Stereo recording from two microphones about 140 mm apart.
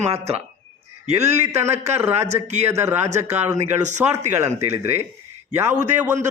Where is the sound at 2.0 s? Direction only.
15° right (ahead or behind).